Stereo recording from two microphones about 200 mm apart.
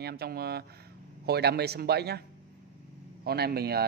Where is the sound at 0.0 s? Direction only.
50° right (ahead or behind).